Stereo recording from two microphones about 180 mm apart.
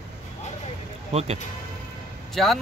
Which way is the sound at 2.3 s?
Centre (ahead or behind).